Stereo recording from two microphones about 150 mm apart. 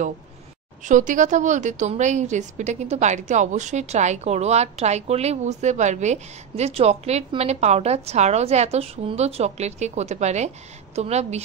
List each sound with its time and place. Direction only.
0.8 s a woman's voice: 55° right (ahead or behind)